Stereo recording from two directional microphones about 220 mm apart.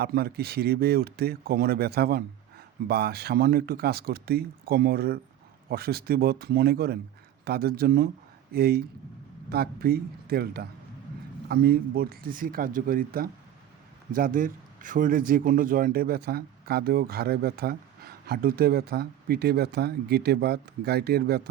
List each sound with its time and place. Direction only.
0.0 s speech: 45° right (ahead or behind)